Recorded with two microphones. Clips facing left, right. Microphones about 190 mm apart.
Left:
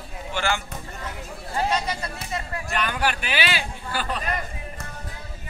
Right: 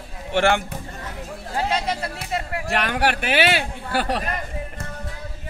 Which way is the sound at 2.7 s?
70° right (ahead or behind).